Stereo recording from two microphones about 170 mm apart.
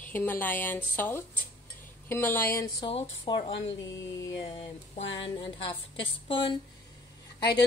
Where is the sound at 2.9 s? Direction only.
30° left (ahead or behind).